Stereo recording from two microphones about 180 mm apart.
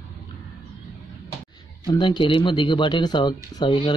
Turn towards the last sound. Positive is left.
turn(degrees=25)  # may be behind; listen again after turning